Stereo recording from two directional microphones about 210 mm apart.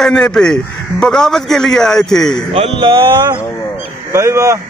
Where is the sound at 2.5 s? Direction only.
25° right (ahead or behind).